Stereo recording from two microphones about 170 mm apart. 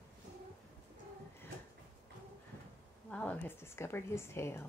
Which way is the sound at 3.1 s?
10° left (ahead or behind).